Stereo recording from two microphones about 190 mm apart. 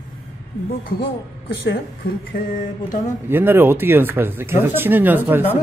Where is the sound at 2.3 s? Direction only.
50° left (ahead or behind).